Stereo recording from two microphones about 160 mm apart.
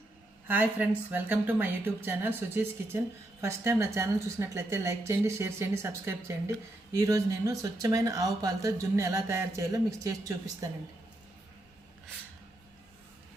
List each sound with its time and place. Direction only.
0.4 s a woman's voice: 10° right (ahead or behind)